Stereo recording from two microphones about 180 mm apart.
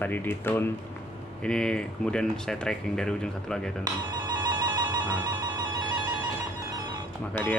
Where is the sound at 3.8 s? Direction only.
20° right (ahead or behind).